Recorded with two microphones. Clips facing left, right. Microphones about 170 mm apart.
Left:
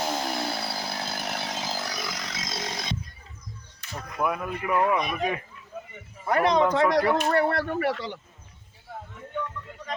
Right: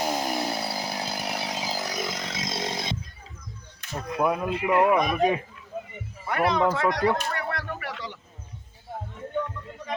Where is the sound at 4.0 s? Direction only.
20° right (ahead or behind).